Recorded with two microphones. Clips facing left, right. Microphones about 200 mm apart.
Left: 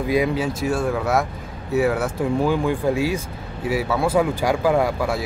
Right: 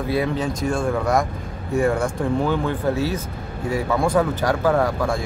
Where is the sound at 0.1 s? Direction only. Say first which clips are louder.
Left 2 dB; 10° left (ahead or behind).